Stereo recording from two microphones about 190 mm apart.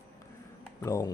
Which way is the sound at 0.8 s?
15° left (ahead or behind).